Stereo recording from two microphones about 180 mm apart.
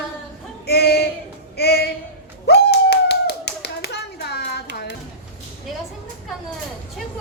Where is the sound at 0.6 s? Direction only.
60° left (ahead or behind).